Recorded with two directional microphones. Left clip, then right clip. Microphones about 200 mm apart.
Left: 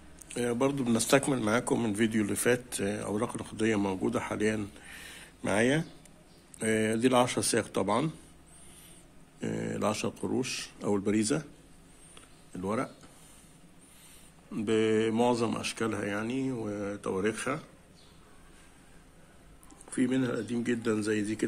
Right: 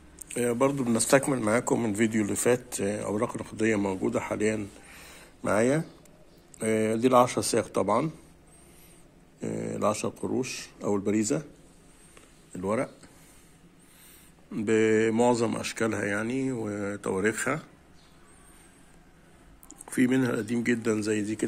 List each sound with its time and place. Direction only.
0.3 s speech: 5° right (ahead or behind)
9.4 s speech: 5° left (ahead or behind)
12.5 s speech: 5° right (ahead or behind)
14.5 s speech: 10° right (ahead or behind)
19.7 s speech: 35° right (ahead or behind); by 21.5 s 5° right (ahead or behind)